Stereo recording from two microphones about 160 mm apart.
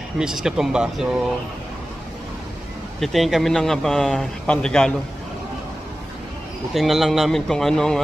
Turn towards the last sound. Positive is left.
turn(degrees=5)  # may be behind; listen again after turning